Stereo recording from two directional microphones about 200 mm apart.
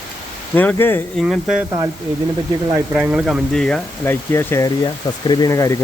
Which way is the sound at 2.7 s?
10° right (ahead or behind).